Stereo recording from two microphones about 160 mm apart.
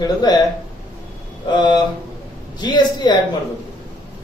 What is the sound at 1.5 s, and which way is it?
A man's voice, 30° left (ahead or behind).